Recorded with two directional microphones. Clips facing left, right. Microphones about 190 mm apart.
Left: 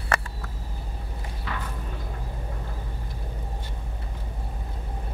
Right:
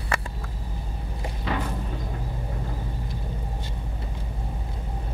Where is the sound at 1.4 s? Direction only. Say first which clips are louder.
Right 7 dB; 25° right (ahead or behind).